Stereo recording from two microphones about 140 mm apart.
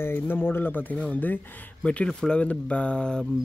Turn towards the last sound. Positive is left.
turn(degrees=5)  # may be behind; listen again after turning